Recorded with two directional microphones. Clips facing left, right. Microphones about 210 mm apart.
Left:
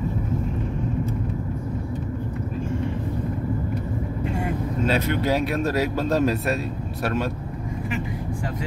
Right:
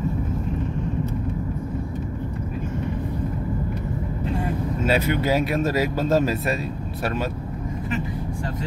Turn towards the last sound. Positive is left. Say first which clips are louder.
# left 1 dB
turn(degrees=0)  # may be behind; listen again after turning